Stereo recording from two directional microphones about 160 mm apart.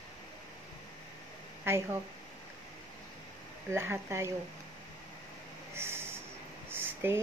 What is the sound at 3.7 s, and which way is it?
Speech, 15° right (ahead or behind).